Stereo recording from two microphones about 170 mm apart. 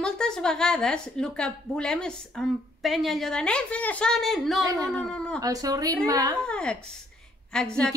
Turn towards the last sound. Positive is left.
turn(degrees=5)  # may be behind; listen again after turning